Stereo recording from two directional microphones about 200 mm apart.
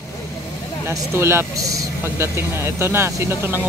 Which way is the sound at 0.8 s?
15° right (ahead or behind).